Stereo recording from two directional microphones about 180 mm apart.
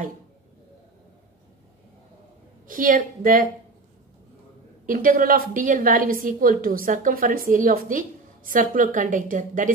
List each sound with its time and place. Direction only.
2.7 s a woman's voice: 50° right (ahead or behind)
4.8 s a woman's voice: 50° right (ahead or behind)